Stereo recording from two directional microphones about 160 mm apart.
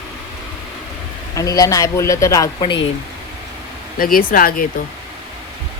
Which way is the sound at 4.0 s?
60° left (ahead or behind).